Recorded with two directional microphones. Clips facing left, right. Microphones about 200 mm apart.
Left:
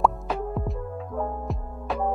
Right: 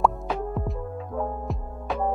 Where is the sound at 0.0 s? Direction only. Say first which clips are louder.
Even; centre (ahead or behind).